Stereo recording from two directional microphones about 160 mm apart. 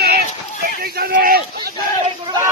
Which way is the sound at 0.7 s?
65° right (ahead or behind).